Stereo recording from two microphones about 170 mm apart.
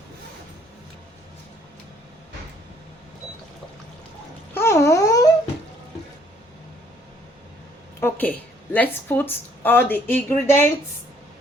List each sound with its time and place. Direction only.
4.5 s wail: 15° left (ahead or behind)
8.0 s a woman's voice: 10° left (ahead or behind)